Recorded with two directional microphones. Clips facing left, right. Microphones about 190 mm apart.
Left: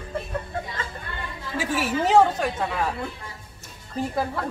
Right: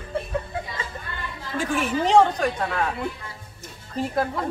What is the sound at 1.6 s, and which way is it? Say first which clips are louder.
Speech: right 1 dB; 5° left (ahead or behind).